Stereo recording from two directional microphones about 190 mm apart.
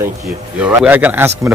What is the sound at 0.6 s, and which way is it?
Speech, 5° right (ahead or behind).